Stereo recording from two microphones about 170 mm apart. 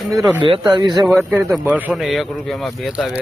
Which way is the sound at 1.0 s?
Centre (ahead or behind).